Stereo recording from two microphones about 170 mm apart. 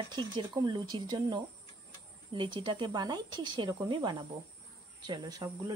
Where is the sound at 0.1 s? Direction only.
25° right (ahead or behind).